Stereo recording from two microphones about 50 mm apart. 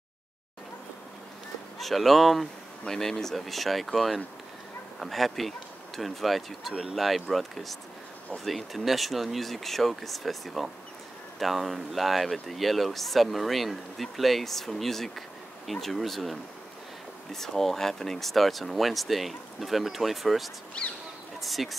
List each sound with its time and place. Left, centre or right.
1.8 s speech: centre
20.8 s speech: left
21.4 s speech: centre